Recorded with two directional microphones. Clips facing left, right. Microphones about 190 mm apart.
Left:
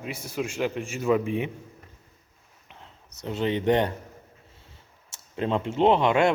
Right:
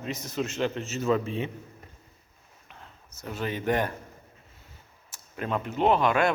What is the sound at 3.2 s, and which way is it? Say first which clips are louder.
Speech: left 5 dB; 25° left (ahead or behind).